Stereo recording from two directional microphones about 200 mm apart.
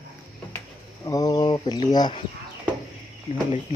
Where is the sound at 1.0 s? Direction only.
20° left (ahead or behind).